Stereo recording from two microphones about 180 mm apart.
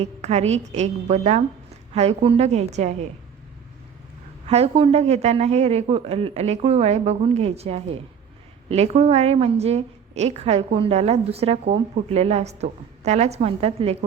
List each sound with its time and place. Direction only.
0.0 s a woman's voice: 35° right (ahead or behind)
4.4 s a woman's voice: 35° right (ahead or behind)